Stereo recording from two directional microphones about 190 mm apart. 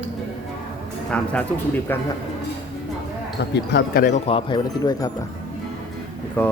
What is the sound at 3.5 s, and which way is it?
Speech, 60° left (ahead or behind).